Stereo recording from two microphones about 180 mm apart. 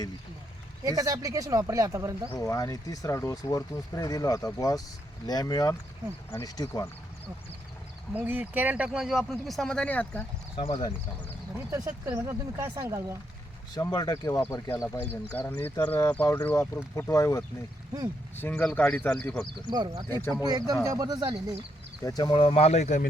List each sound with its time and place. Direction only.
0.9 s speech: 20° right (ahead or behind)
2.3 s speech: 20° left (ahead or behind)
8.1 s speech: 10° right (ahead or behind); by 10.2 s 10° left (ahead or behind)
10.6 s speech: 30° left (ahead or behind)
11.7 s speech: 20° right (ahead or behind)
13.7 s speech: 20° left (ahead or behind)
15.3 s speech: 10° left (ahead or behind)
19.7 s speech: 25° right (ahead or behind)
20.1 s speech: 15° left (ahead or behind)
20.4 s speech: 20° right (ahead or behind)
22.0 s speech: 25° left (ahead or behind); by 23.0 s 40° left (ahead or behind)